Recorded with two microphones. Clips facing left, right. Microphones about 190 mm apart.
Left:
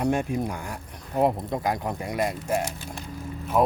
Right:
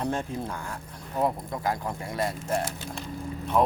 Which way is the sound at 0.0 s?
15° left (ahead or behind).